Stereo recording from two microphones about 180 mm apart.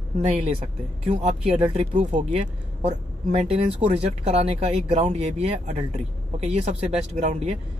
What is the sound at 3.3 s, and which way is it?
Speech, 35° right (ahead or behind).